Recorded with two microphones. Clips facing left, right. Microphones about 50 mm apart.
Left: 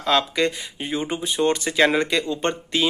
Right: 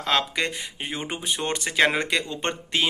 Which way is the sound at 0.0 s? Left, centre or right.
Right.